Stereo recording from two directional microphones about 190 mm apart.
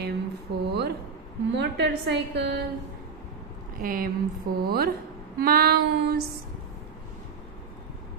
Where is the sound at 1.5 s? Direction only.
65° right (ahead or behind).